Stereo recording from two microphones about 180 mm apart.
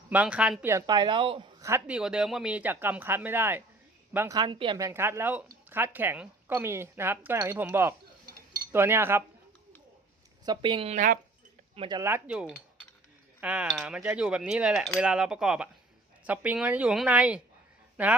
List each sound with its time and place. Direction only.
0.1 s speech: 5° right (ahead or behind); by 1.5 s 30° right (ahead or behind)
1.6 s speech: 10° right (ahead or behind)
10.4 s speech: 25° right (ahead or behind); by 11.2 s 45° right (ahead or behind)
11.7 s speech: 30° right (ahead or behind)
12.0 s speech: 10° right (ahead or behind)